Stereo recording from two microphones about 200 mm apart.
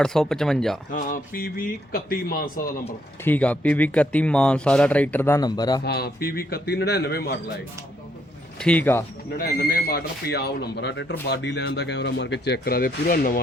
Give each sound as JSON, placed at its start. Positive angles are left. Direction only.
{"t": 0.0, "sound": "speech", "side_deg": 0}
{"t": 0.9, "sound": "speech", "side_deg": 45}
{"t": 3.2, "sound": "speech", "side_deg": 10}
{"t": 5.8, "sound": "speech", "side_deg": 50}
{"t": 8.5, "sound": "speech", "side_deg": 5}
{"t": 9.4, "sound": "speech", "side_deg": 50}